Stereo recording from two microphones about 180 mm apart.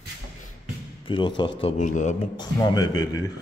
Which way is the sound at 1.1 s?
25° left (ahead or behind).